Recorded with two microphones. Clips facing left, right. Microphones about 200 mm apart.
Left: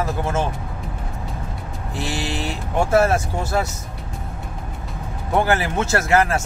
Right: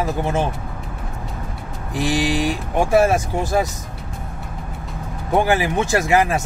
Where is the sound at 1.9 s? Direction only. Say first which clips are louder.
Right 7 dB; 15° right (ahead or behind).